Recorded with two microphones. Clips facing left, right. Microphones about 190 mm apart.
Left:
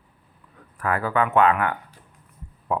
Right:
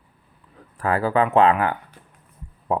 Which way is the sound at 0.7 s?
30° right (ahead or behind).